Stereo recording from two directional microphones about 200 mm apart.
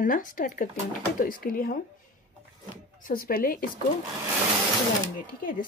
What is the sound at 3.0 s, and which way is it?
Speech, 45° left (ahead or behind).